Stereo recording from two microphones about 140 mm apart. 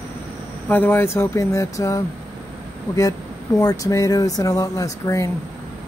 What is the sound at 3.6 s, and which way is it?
Speech, 25° left (ahead or behind).